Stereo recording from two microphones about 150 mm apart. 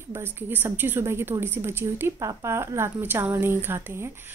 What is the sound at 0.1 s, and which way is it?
A woman's voice, 15° right (ahead or behind).